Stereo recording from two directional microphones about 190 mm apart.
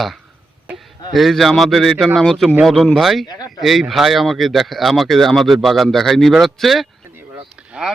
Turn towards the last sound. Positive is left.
turn(degrees=-5)  # may be behind; listen again after turning